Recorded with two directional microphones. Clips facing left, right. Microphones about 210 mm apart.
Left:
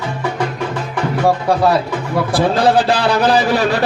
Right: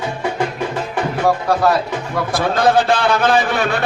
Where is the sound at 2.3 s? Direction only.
30° left (ahead or behind).